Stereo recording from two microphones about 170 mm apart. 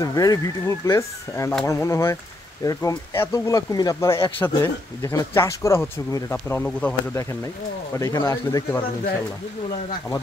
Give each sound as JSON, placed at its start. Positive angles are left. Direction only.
{"t": 0.0, "sound": "speech", "side_deg": 20}
{"t": 8.0, "sound": "speech", "side_deg": 20}